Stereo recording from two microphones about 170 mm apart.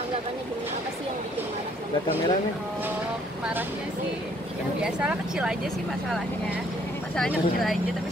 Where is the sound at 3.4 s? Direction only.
10° right (ahead or behind).